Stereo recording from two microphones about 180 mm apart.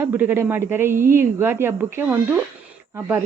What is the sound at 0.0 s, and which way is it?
Speech, 10° right (ahead or behind).